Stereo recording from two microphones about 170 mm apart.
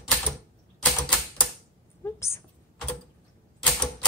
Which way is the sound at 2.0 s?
15° left (ahead or behind).